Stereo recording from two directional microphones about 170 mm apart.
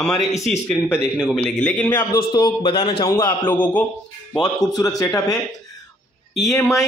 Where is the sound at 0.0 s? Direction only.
15° left (ahead or behind).